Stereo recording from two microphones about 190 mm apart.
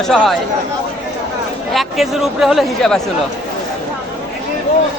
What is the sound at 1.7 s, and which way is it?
Speech, centre (ahead or behind).